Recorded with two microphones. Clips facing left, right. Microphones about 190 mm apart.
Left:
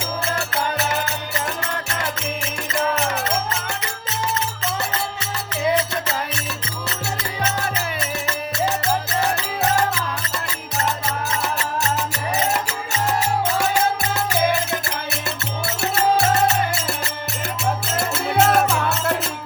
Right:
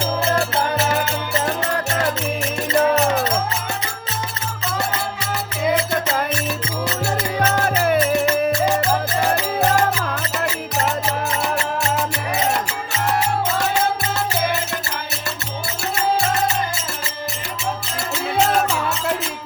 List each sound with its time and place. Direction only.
1.5 s music: 35° right (ahead or behind)
7.3 s music: 50° right (ahead or behind)